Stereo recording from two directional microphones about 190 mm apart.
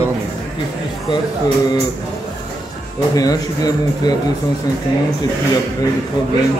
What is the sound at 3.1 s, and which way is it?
Speech, 20° left (ahead or behind).